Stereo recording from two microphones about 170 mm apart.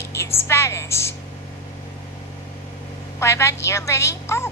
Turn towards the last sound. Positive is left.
turn(degrees=15)  # may be behind; listen again after turning